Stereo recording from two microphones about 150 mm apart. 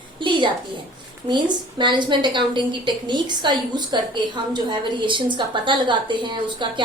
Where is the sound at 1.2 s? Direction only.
30° right (ahead or behind).